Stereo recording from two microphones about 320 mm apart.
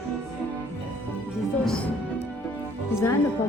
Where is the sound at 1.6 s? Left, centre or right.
Centre.